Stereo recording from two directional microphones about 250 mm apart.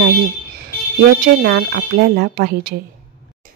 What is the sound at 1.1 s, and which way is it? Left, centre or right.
Speech, right.